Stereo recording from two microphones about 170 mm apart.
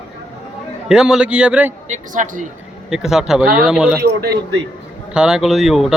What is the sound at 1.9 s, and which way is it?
Speech, 50° right (ahead or behind).